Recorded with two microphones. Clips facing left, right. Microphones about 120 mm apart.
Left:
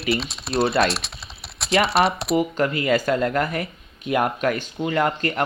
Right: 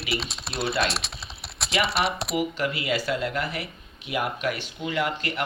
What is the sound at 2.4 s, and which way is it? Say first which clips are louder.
Speech: left 4 dB; 45° left (ahead or behind).